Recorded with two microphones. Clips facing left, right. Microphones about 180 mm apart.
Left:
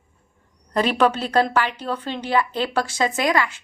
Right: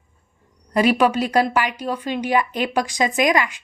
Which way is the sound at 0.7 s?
10° right (ahead or behind).